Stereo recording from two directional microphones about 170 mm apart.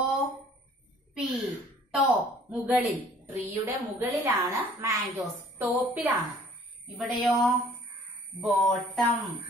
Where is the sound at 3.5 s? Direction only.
15° right (ahead or behind).